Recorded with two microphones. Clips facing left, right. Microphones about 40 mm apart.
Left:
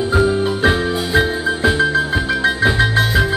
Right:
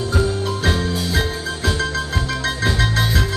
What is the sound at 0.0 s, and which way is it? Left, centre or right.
Music, left.